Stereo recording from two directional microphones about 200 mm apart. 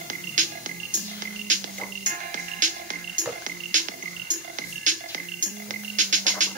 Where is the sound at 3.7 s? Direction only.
40° right (ahead or behind).